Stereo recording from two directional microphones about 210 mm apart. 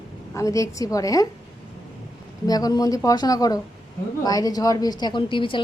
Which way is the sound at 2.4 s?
20° left (ahead or behind).